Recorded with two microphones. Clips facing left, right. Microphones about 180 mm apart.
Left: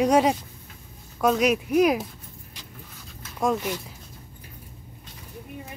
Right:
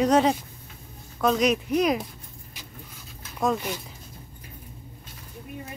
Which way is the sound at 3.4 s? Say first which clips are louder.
Left 1 dB; 5° left (ahead or behind).